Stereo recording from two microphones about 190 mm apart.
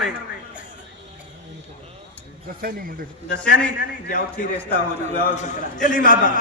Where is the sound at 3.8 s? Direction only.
50° left (ahead or behind).